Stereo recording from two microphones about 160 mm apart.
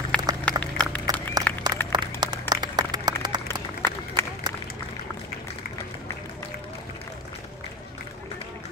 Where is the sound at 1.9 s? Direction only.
25° right (ahead or behind).